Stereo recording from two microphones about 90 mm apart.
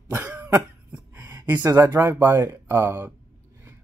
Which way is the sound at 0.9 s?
20° right (ahead or behind).